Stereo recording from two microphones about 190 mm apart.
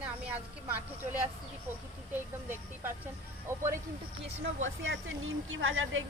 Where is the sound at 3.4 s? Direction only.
15° right (ahead or behind).